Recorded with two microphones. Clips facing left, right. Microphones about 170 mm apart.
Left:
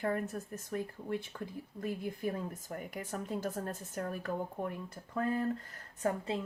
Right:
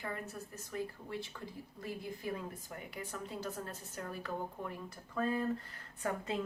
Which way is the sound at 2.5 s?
45° left (ahead or behind).